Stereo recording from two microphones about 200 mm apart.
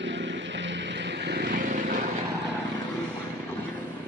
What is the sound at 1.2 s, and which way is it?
Vehicle, 55° right (ahead or behind).